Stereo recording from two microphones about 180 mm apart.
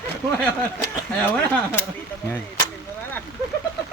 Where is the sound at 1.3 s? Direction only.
5° left (ahead or behind).